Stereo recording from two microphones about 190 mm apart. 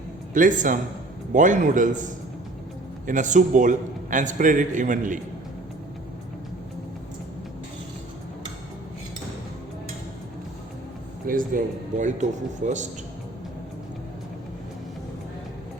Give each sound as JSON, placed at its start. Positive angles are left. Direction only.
{"t": 0.3, "sound": "a man's voice", "side_deg": -45}
{"t": 3.1, "sound": "a man's voice", "side_deg": -40}
{"t": 11.3, "sound": "a man's voice", "side_deg": -45}